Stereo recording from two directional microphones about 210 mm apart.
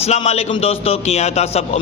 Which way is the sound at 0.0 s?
30° left (ahead or behind).